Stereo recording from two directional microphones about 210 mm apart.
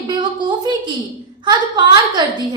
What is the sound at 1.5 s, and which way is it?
Speech, 20° right (ahead or behind).